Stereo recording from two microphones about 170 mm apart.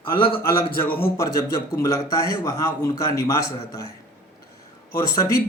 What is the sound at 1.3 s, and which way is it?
A man's voice, 20° left (ahead or behind).